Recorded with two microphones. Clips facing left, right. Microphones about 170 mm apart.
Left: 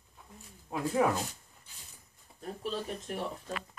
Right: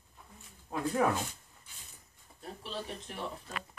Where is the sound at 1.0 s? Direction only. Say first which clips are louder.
Left 1 dB; 10° left (ahead or behind).